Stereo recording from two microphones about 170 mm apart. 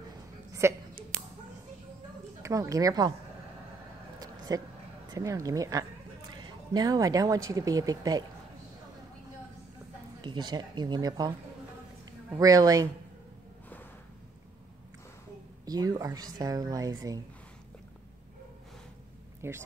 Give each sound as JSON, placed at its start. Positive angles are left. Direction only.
{"t": 0.5, "sound": "a sound", "side_deg": -15}
{"t": 2.4, "sound": "a woman's voice", "side_deg": -20}
{"t": 4.5, "sound": "a woman's voice", "side_deg": -20}
{"t": 10.2, "sound": "a woman's voice", "side_deg": -25}
{"t": 15.6, "sound": "a woman's voice", "side_deg": -20}
{"t": 19.4, "sound": "speech", "side_deg": -15}